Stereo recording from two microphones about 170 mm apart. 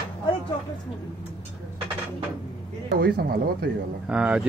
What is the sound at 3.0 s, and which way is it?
Speech, 65° right (ahead or behind).